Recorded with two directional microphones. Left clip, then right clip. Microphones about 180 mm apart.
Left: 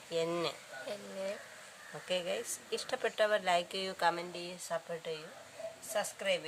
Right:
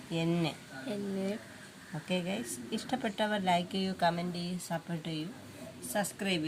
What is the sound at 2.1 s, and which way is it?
Speech, 40° left (ahead or behind).